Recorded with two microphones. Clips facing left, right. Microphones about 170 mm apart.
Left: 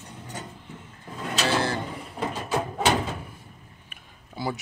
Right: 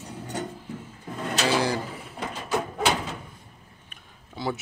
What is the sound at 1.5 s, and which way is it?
Pigeon, 15° right (ahead or behind).